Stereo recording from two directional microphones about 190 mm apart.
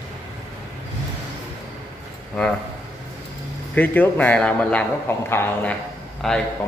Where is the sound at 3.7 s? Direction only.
10° left (ahead or behind).